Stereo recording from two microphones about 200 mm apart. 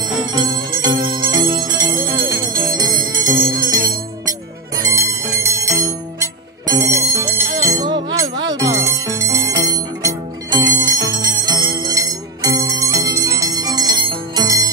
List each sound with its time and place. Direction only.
0.3 s jingle bell: 20° right (ahead or behind)
3.4 s music: 45° right (ahead or behind)
4.8 s music: 15° right (ahead or behind)